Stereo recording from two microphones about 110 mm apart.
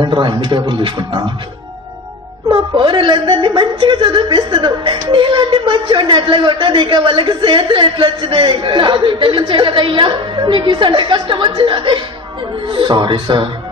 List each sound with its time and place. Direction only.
0.0 s a woman's voice: 45° right (ahead or behind)
2.5 s a woman's voice: 50° right (ahead or behind)